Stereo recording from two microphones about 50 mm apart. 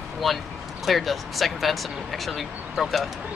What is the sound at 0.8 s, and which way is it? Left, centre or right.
Speech, centre.